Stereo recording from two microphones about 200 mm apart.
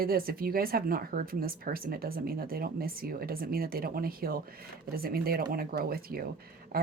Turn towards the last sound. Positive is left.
turn(degrees=-50)  # may be behind; listen again after turning